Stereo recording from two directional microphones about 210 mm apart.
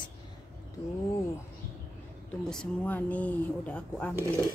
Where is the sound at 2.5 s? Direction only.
5° left (ahead or behind).